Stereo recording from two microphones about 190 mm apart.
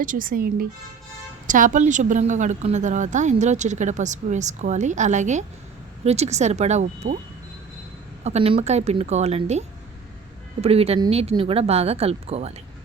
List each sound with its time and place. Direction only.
0.0 s speech: 45° right (ahead or behind)
8.2 s speech: 35° right (ahead or behind)